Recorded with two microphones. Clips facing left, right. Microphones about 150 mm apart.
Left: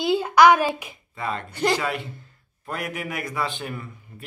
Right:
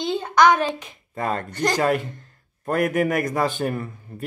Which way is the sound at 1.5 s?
10° left (ahead or behind).